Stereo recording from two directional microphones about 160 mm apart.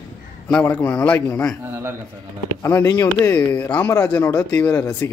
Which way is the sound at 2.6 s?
20° left (ahead or behind).